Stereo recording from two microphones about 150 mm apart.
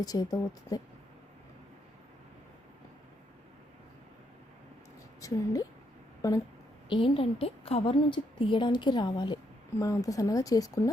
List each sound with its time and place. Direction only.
0.0 s a woman's voice: 25° left (ahead or behind)
5.2 s a sound: 20° left (ahead or behind)
6.2 s a woman's voice: 20° left (ahead or behind)
6.9 s a woman's voice: 35° left (ahead or behind)